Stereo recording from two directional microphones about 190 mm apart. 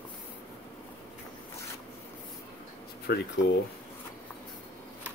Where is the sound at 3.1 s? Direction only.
55° left (ahead or behind).